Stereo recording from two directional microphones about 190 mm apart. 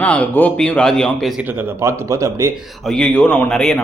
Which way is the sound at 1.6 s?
15° right (ahead or behind).